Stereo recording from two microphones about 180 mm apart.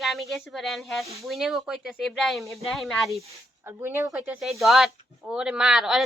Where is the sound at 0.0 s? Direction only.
Centre (ahead or behind).